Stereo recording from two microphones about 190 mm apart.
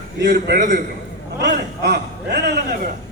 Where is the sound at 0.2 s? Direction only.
65° right (ahead or behind).